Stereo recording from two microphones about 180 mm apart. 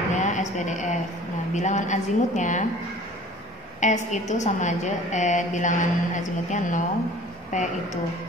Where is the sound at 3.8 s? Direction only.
40° left (ahead or behind).